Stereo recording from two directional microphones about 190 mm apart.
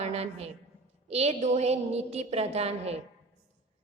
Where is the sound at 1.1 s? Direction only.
35° right (ahead or behind).